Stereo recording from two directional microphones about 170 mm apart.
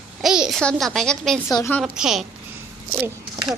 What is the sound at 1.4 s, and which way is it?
Speech, 20° left (ahead or behind).